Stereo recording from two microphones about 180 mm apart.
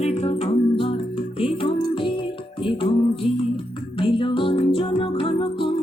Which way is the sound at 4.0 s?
30° left (ahead or behind).